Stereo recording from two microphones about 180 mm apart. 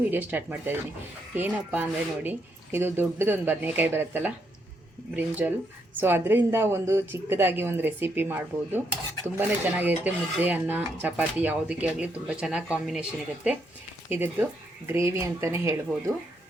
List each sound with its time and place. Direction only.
0.0 s speech: 10° right (ahead or behind)